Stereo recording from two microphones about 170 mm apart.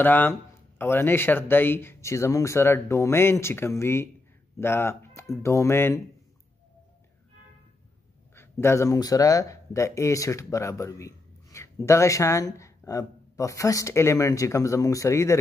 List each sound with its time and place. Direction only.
0.0 s speech: 10° left (ahead or behind)
8.4 s speech: 15° left (ahead or behind)